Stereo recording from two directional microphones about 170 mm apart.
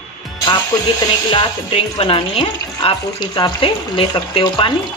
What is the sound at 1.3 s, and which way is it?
Speech, 30° left (ahead or behind).